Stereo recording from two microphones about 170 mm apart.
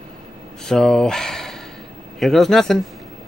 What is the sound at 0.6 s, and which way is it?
Speech, 5° left (ahead or behind).